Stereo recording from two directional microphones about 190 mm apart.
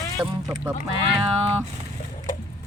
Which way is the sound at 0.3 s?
20° right (ahead or behind).